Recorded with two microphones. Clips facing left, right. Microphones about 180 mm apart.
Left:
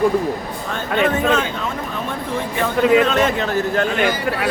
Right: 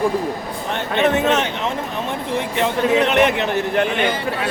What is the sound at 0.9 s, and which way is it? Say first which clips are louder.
A man's voice: even; 25° right (ahead or behind).